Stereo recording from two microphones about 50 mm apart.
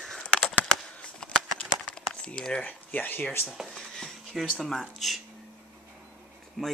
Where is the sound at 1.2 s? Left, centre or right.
Left.